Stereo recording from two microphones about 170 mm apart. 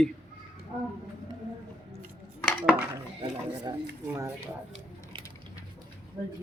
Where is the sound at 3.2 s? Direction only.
25° right (ahead or behind).